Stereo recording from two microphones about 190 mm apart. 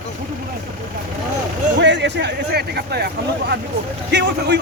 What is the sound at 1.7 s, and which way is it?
A man's voice, 65° right (ahead or behind).